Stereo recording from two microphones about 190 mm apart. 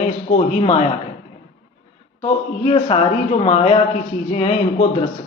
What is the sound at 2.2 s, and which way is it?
A man's voice, 30° left (ahead or behind).